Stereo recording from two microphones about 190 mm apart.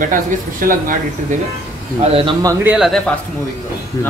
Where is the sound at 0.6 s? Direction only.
50° right (ahead or behind).